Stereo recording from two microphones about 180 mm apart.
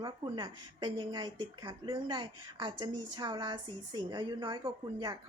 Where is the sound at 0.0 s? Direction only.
20° right (ahead or behind).